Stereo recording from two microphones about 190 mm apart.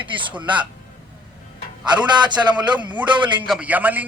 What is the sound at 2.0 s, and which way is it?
Speech, 25° right (ahead or behind).